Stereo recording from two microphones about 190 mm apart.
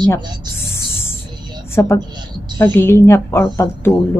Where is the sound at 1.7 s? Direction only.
15° left (ahead or behind).